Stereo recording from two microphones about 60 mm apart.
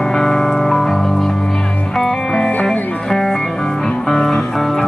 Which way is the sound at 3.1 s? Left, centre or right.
Centre.